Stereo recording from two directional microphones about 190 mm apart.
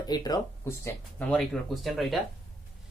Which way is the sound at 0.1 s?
20° left (ahead or behind).